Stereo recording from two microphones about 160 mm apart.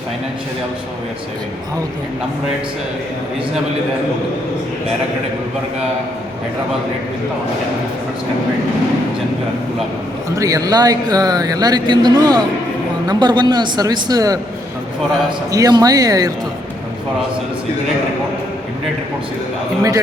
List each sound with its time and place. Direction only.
10.3 s speech: 20° right (ahead or behind)
15.5 s speech: 25° right (ahead or behind)